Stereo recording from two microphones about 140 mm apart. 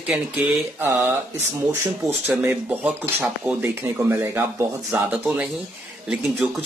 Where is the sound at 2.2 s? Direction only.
15° right (ahead or behind).